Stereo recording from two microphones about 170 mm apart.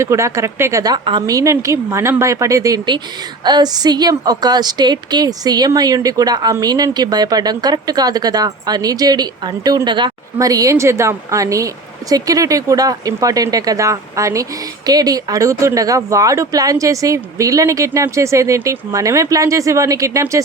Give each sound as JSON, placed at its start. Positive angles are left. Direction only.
{"t": 0.0, "sound": "a woman's voice", "side_deg": -15}